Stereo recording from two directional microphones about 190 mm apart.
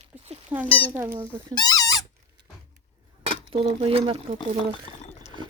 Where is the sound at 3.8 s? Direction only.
30° right (ahead or behind).